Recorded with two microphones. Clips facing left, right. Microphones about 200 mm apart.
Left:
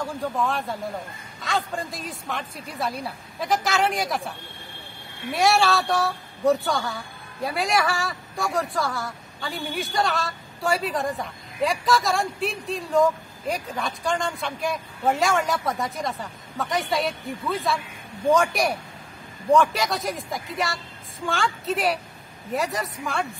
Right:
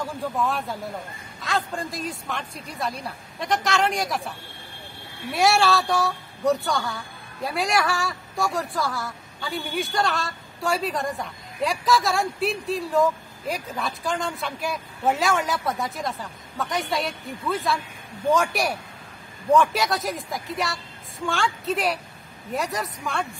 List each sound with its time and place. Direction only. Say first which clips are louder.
0.5 s a woman's voice: left 1 dB; centre (ahead or behind)